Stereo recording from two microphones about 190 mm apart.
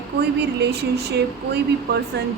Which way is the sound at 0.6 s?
60° right (ahead or behind).